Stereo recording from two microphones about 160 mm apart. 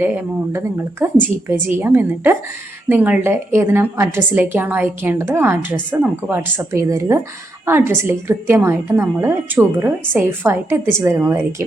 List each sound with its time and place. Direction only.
0.5 s a woman's voice: 15° right (ahead or behind)